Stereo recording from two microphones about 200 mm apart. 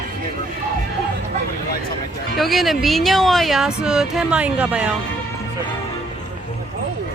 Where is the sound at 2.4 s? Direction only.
Centre (ahead or behind).